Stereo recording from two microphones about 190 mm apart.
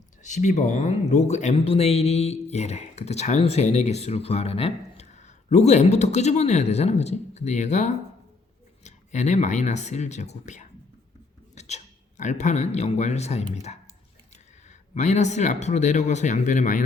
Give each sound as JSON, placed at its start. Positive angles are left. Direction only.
{"t": 0.2, "sound": "speech", "side_deg": 40}
{"t": 14.9, "sound": "speech", "side_deg": 40}